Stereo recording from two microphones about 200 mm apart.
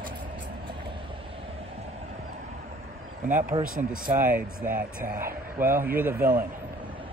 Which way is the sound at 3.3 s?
40° right (ahead or behind).